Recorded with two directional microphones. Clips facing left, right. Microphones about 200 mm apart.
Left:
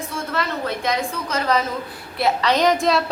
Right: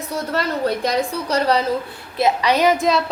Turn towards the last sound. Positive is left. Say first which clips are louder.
# right 1 dB
turn(degrees=0)  # may be behind; listen again after turning